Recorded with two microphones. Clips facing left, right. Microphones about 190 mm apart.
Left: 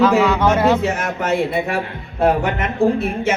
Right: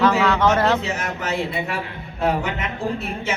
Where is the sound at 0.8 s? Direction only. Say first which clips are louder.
Left 6 dB; 55° left (ahead or behind).